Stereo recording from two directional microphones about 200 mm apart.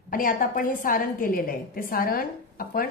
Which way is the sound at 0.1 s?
45° left (ahead or behind).